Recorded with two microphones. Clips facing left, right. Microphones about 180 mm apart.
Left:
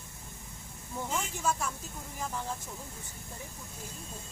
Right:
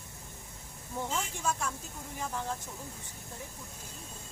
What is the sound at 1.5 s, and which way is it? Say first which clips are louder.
Speech: left 2 dB; 5° left (ahead or behind).